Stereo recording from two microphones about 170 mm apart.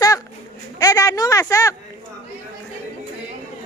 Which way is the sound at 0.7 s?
20° left (ahead or behind).